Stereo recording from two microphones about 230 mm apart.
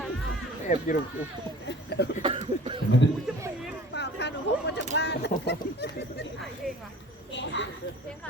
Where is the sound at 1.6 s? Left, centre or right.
Left.